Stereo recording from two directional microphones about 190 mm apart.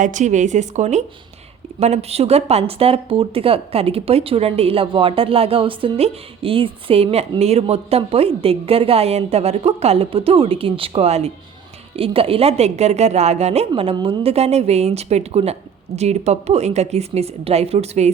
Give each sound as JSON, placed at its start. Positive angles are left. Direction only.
{"t": 0.0, "sound": "speech", "side_deg": -40}